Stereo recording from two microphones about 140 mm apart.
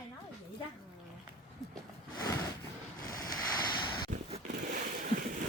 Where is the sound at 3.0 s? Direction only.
25° left (ahead or behind).